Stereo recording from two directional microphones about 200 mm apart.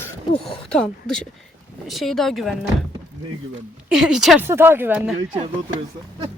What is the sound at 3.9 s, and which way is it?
Speech, 5° right (ahead or behind).